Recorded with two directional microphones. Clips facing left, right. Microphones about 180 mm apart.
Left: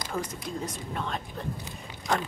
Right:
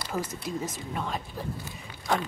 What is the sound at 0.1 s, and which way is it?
Speech, 5° right (ahead or behind).